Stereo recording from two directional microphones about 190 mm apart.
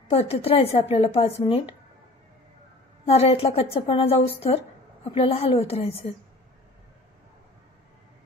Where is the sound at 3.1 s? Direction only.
30° left (ahead or behind).